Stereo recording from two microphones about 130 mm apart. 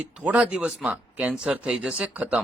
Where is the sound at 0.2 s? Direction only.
10° right (ahead or behind).